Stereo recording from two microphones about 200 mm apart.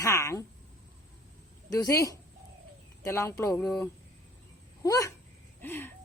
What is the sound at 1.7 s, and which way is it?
A woman's voice, 15° left (ahead or behind).